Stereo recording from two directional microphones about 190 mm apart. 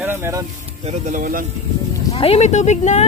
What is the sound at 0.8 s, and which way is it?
Speech, 35° right (ahead or behind).